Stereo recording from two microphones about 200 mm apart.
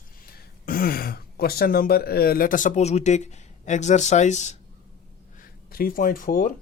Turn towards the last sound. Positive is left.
turn(degrees=45)  # may be behind; listen again after turning